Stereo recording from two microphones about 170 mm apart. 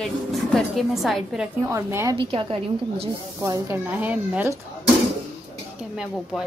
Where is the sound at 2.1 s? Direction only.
30° right (ahead or behind).